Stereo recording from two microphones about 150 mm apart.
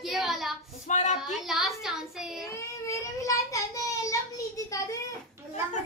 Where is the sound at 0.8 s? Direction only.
50° left (ahead or behind).